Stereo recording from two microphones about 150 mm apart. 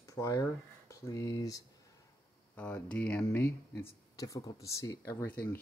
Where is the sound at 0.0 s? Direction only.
20° left (ahead or behind).